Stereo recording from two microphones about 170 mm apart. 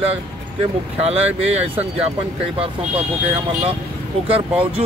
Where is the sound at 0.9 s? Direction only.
35° right (ahead or behind).